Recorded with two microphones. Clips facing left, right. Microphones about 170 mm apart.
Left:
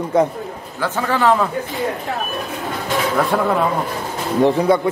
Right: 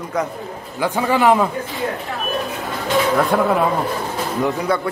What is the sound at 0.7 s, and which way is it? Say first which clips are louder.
Speech: right 2 dB; 15° right (ahead or behind).